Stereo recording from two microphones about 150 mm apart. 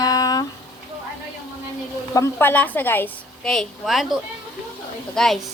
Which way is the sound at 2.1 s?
20° left (ahead or behind).